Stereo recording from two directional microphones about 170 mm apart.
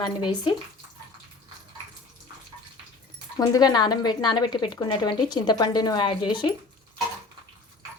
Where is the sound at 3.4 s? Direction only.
25° left (ahead or behind).